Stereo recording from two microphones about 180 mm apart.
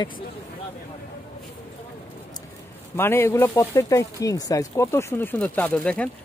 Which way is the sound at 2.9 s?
10° left (ahead or behind).